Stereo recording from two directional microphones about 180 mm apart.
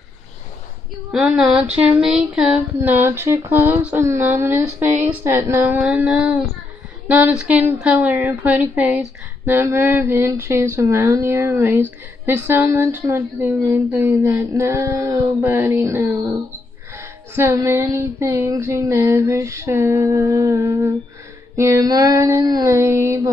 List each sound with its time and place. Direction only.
1.1 s a woman's voice: centre (ahead or behind)